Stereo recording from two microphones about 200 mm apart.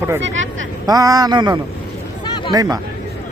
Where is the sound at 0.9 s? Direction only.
20° right (ahead or behind).